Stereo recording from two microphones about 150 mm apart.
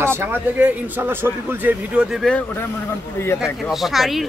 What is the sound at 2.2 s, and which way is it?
Speech, 10° left (ahead or behind).